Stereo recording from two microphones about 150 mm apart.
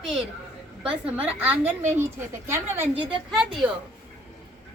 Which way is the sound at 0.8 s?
5° right (ahead or behind).